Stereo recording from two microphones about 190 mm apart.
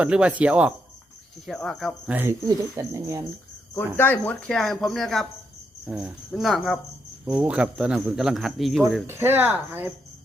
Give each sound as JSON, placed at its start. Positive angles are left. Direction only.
{"t": 0.0, "sound": "speech", "side_deg": -5}
{"t": 2.0, "sound": "speech", "side_deg": -10}
{"t": 3.9, "sound": "speech", "side_deg": 10}
{"t": 9.0, "sound": "speech", "side_deg": -10}